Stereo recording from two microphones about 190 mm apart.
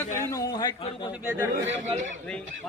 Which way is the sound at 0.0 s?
15° left (ahead or behind).